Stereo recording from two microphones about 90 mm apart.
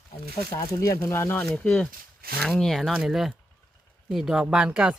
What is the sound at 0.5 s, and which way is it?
Speech, 40° left (ahead or behind).